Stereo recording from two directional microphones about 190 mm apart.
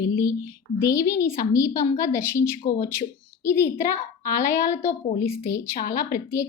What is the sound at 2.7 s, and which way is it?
Speech, 50° left (ahead or behind).